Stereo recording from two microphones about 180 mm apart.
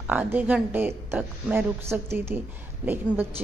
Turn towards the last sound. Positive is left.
turn(degrees=-10)  # may be behind; listen again after turning